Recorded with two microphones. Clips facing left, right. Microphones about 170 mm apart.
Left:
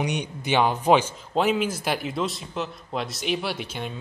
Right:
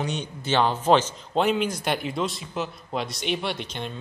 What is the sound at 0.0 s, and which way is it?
A man's voice, 15° left (ahead or behind).